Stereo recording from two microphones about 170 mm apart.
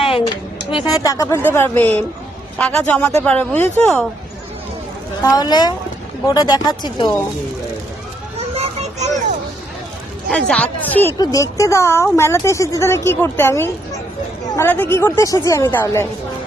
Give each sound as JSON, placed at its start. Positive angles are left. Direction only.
{"t": 0.6, "sound": "speech", "side_deg": 30}
{"t": 5.2, "sound": "speech", "side_deg": 20}
{"t": 8.4, "sound": "a sound", "side_deg": -40}
{"t": 10.2, "sound": "speech", "side_deg": 5}
{"t": 11.2, "sound": "speech", "side_deg": 20}